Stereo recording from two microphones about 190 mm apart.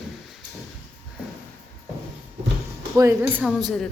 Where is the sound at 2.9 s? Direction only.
15° right (ahead or behind).